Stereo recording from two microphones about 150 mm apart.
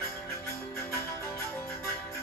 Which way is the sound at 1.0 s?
15° left (ahead or behind).